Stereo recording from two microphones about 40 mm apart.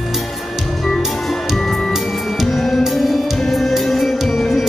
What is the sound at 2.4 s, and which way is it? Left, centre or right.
Music, centre.